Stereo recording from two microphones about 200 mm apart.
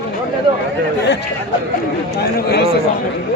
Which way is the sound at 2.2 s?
55° left (ahead or behind).